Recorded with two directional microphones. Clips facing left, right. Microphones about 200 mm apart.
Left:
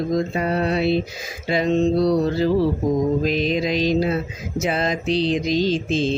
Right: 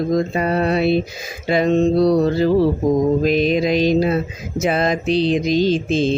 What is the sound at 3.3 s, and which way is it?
Speech, 55° right (ahead or behind).